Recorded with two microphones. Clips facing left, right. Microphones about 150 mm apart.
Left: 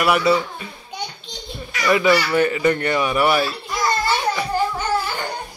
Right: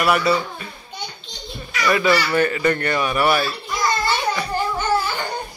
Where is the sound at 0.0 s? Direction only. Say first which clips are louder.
Left 1 dB; 15° left (ahead or behind).